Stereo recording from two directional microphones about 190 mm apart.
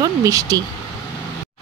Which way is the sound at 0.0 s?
15° right (ahead or behind).